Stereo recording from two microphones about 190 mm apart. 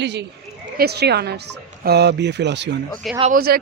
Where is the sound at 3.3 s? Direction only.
50° right (ahead or behind).